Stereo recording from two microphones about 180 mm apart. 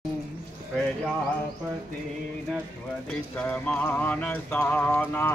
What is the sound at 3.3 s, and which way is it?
Speech, 5° left (ahead or behind).